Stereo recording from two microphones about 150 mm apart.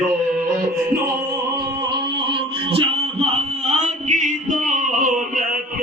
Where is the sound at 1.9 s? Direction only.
35° right (ahead or behind); by 5.6 s 60° right (ahead or behind).